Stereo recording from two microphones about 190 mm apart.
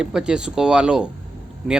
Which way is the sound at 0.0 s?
5° right (ahead or behind).